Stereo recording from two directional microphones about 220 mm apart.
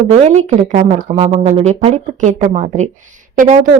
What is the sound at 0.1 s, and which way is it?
A woman's voice, 30° right (ahead or behind).